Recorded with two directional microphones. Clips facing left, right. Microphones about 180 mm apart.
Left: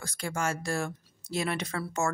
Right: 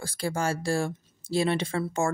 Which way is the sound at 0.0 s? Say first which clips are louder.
Right 4 dB; 30° right (ahead or behind).